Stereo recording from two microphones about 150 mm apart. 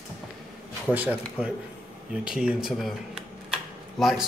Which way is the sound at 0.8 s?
10° right (ahead or behind).